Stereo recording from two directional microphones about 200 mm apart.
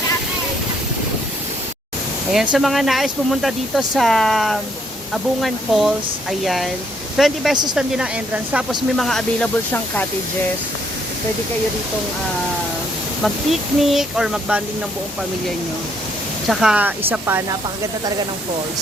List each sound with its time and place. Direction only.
2.3 s speech: 5° right (ahead or behind)
7.5 s speech: 20° right (ahead or behind)
7.8 s speech: 5° right (ahead or behind)
13.2 s speech: centre (ahead or behind)
16.5 s speech: centre (ahead or behind)